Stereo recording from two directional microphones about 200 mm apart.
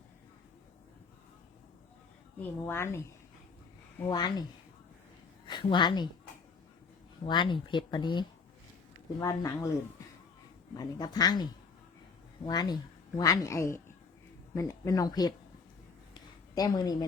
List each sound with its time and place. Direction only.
2.4 s speech: 10° left (ahead or behind)
4.1 s speech: 20° left (ahead or behind)
5.5 s a woman's voice: 25° left (ahead or behind)
7.3 s speech: 25° left (ahead or behind)
10.8 s speech: 20° left (ahead or behind)
12.5 s speech: 20° left (ahead or behind)
16.6 s speech: 20° left (ahead or behind)